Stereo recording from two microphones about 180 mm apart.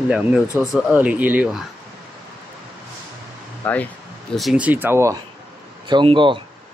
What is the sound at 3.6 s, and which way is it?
Speech, 10° left (ahead or behind).